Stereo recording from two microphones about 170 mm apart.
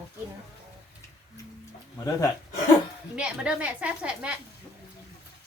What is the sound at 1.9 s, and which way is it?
Speech, 20° left (ahead or behind).